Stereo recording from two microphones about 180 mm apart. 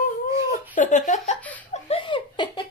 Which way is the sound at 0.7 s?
45° left (ahead or behind).